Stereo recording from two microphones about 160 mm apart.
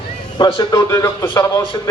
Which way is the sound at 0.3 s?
30° left (ahead or behind).